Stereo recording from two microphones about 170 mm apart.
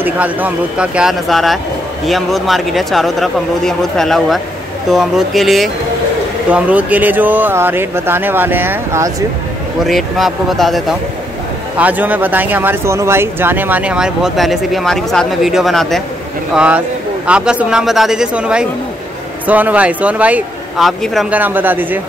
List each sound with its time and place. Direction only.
0.0 s speech: 10° right (ahead or behind)
9.8 s speech: centre (ahead or behind)